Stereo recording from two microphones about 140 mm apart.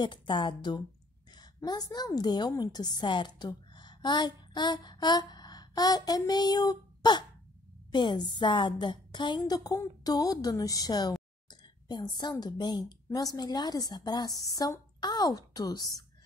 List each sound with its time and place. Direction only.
0.0 s a woman's voice: 35° left (ahead or behind)